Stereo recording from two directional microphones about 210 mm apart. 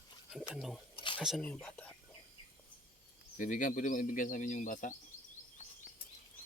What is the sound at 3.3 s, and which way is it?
Speech, 40° left (ahead or behind).